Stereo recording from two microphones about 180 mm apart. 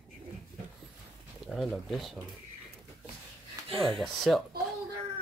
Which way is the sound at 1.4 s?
Centre (ahead or behind).